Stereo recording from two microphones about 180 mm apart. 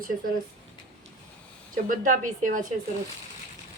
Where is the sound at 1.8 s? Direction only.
45° right (ahead or behind).